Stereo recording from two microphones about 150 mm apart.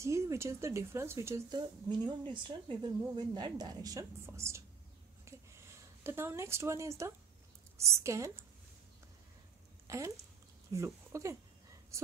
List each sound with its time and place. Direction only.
0.0 s speech: 20° right (ahead or behind)
1.9 s speech: 30° right (ahead or behind)
5.3 s a sound: 20° right (ahead or behind)
6.0 s a woman's voice: 15° right (ahead or behind)
9.8 s speech: 20° right (ahead or behind)